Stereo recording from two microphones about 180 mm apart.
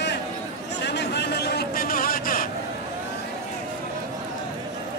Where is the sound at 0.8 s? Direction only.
70° left (ahead or behind); by 2.4 s 50° left (ahead or behind).